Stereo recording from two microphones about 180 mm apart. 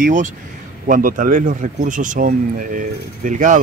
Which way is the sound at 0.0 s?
45° right (ahead or behind).